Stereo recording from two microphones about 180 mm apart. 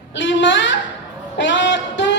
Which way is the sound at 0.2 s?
90° left.